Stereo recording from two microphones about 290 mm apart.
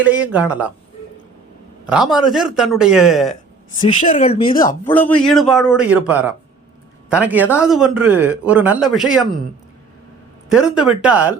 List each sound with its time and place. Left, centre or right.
0.0 s a man's voice: centre
1.9 s a man's voice: centre
4.0 s speech: left
4.9 s a man's voice: centre
10.5 s a man's voice: centre